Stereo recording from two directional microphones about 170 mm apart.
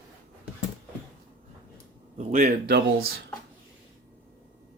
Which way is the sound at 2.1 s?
45° right (ahead or behind).